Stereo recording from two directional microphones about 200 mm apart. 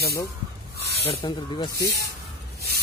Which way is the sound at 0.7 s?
55° right (ahead or behind).